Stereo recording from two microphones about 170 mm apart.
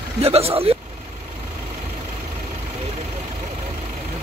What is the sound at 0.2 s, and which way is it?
Speech, 35° right (ahead or behind).